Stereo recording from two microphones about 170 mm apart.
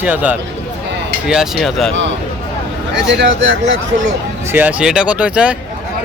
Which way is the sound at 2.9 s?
90° right.